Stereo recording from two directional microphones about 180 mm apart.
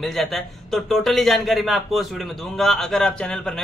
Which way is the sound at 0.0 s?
Centre (ahead or behind).